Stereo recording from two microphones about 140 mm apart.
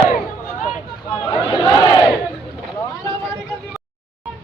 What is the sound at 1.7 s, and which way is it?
Battle cry, 30° left (ahead or behind).